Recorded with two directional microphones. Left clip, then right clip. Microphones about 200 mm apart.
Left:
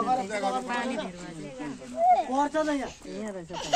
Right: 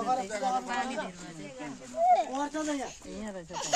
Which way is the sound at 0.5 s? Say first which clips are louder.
Left 1 dB; 35° right (ahead or behind).